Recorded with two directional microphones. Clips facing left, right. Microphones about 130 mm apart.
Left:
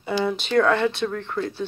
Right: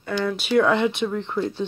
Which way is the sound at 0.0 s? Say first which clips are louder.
Left 1 dB; 10° left (ahead or behind).